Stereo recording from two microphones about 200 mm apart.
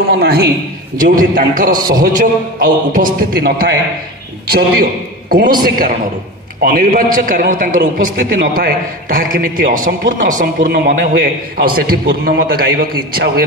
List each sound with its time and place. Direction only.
0.1 s a man's voice: 55° right (ahead or behind)
0.9 s a man's voice: 45° right (ahead or behind)